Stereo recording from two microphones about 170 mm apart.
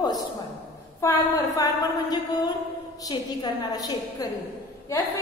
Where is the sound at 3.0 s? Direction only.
20° left (ahead or behind).